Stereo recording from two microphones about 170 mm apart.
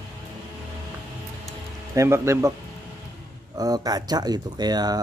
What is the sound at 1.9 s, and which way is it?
Speech, 15° right (ahead or behind).